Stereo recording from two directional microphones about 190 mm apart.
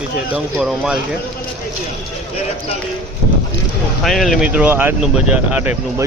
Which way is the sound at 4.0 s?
Centre (ahead or behind).